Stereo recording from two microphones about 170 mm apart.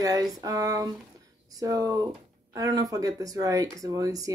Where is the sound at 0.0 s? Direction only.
20° right (ahead or behind).